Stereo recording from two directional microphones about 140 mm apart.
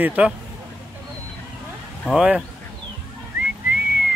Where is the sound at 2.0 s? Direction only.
5° right (ahead or behind).